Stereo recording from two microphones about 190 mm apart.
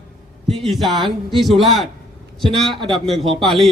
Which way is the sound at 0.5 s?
Centre (ahead or behind).